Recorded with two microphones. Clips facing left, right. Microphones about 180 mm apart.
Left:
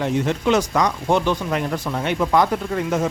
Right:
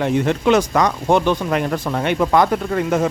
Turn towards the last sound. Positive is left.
turn(degrees=-60)  # may be behind; listen again after turning